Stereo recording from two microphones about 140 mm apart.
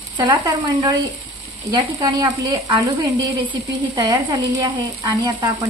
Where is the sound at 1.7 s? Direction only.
25° right (ahead or behind).